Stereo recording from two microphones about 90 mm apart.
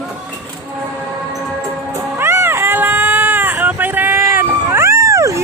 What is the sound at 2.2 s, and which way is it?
Baby cry, 25° right (ahead or behind).